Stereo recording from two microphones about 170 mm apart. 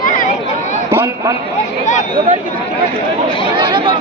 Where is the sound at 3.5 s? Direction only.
30° right (ahead or behind).